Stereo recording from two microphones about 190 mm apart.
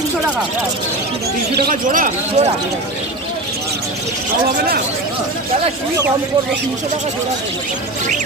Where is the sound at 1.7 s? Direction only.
45° right (ahead or behind).